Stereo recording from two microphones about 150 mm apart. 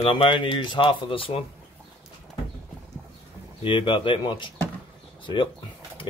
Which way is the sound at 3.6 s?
35° left (ahead or behind).